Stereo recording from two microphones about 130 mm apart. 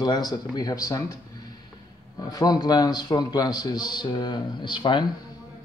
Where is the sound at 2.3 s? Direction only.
30° left (ahead or behind).